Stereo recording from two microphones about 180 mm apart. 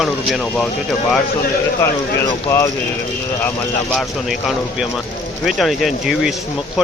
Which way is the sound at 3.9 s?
Centre (ahead or behind).